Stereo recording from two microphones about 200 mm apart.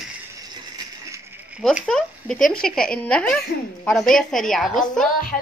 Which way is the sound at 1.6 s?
Centre (ahead or behind).